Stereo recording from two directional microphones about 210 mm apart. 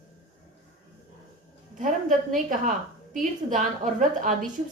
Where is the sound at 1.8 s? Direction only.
35° right (ahead or behind).